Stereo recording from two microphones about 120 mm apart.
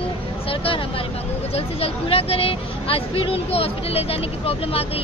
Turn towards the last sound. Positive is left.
turn(degrees=55)  # may be behind; listen again after turning